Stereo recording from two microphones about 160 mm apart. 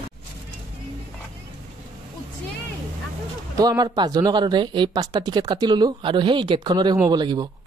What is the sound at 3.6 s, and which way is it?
Speech, 25° right (ahead or behind).